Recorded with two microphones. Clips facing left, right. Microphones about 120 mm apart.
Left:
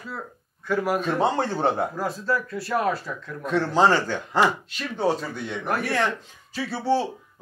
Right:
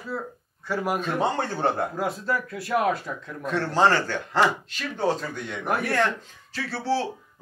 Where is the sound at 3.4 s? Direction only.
Centre (ahead or behind).